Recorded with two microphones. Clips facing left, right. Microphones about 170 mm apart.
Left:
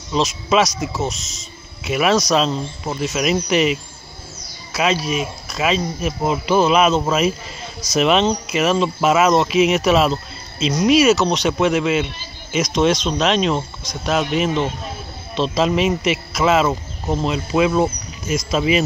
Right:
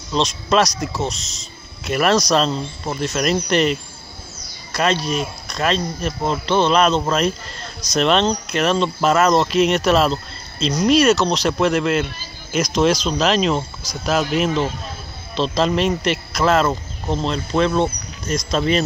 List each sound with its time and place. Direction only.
0.1 s speech: 5° left (ahead or behind)